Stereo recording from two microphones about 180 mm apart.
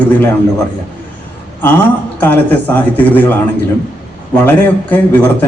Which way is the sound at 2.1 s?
10° left (ahead or behind).